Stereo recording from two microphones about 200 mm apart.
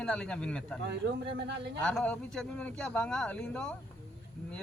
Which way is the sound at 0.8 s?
60° right (ahead or behind).